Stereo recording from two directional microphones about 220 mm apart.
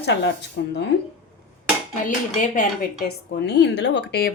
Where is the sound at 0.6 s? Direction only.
50° left (ahead or behind).